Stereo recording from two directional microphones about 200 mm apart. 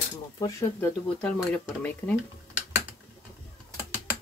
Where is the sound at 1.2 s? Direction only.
5° left (ahead or behind).